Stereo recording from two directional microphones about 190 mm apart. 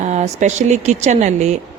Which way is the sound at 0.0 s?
35° right (ahead or behind).